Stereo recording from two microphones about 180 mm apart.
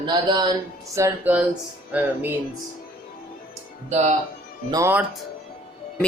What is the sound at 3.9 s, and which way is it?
Speech, 40° right (ahead or behind).